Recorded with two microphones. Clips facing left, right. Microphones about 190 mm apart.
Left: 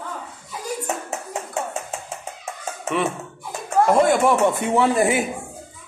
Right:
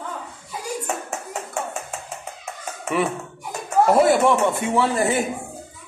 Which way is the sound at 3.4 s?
5° right (ahead or behind).